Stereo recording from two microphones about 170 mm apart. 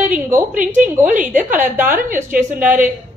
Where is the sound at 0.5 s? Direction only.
50° right (ahead or behind).